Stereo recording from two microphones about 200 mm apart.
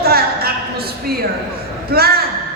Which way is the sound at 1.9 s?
50° right (ahead or behind).